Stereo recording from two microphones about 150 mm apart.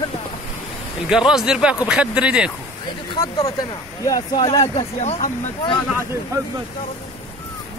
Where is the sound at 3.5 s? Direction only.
25° left (ahead or behind).